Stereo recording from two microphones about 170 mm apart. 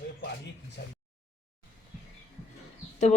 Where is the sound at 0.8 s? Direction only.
70° left (ahead or behind).